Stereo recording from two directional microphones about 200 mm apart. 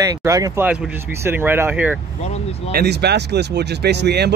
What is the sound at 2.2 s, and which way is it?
Speech, 30° left (ahead or behind).